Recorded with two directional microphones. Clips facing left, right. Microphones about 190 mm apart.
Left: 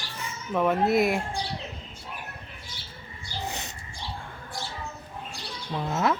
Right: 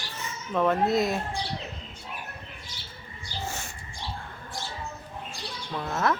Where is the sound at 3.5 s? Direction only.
20° left (ahead or behind).